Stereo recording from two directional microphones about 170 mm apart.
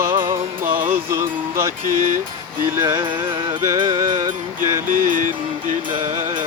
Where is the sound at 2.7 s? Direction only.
15° right (ahead or behind).